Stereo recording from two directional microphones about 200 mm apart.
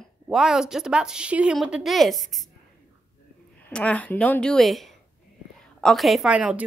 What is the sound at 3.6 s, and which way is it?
A woman's voice, 5° left (ahead or behind).